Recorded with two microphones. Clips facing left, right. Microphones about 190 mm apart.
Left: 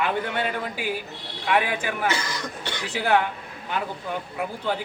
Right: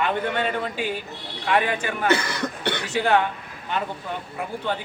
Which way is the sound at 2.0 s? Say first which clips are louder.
Right 5 dB; 60° right (ahead or behind).